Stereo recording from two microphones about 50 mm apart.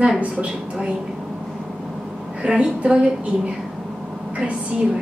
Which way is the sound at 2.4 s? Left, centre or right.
Centre.